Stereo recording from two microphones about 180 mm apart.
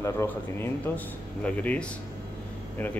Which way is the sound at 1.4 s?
5° left (ahead or behind).